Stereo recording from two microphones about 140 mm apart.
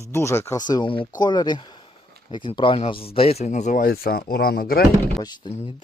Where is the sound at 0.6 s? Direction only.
30° left (ahead or behind); by 4.8 s 90° left.